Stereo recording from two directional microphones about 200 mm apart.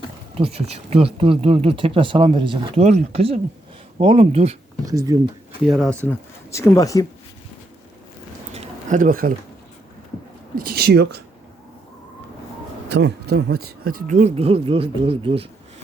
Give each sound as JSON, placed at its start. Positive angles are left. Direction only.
{"t": 0.3, "sound": "speech", "side_deg": -30}
{"t": 4.9, "sound": "speech", "side_deg": -15}
{"t": 5.6, "sound": "speech", "side_deg": 0}
{"t": 6.1, "sound": "speech", "side_deg": 15}
{"t": 8.5, "sound": "a sound", "side_deg": -35}
{"t": 10.5, "sound": "speech", "side_deg": -50}
{"t": 12.9, "sound": "speech", "side_deg": -55}
{"t": 13.8, "sound": "speech", "side_deg": -40}